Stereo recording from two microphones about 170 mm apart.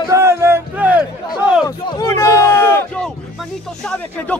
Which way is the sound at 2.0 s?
20° left (ahead or behind).